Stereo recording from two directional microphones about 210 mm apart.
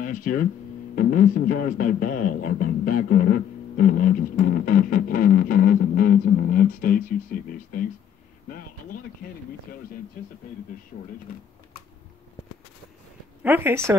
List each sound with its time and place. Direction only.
0.0 s speech: 40° left (ahead or behind)
9.7 s speech: 45° left (ahead or behind)
13.4 s a woman's voice: 10° right (ahead or behind)